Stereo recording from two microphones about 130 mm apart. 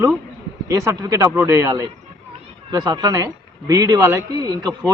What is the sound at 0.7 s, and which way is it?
Speech, 25° right (ahead or behind).